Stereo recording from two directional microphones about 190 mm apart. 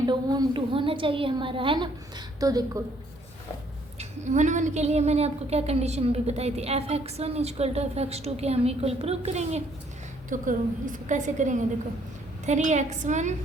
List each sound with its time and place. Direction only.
0.0 s a woman's voice: 20° right (ahead or behind)
3.9 s a woman's voice: 40° right (ahead or behind)